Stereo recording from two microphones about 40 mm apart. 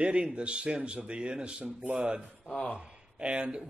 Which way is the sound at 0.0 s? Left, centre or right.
Right.